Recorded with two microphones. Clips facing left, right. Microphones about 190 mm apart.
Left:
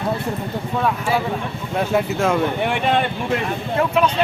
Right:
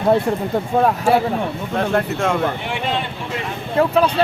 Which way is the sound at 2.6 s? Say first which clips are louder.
Left 4 dB; 55° left (ahead or behind).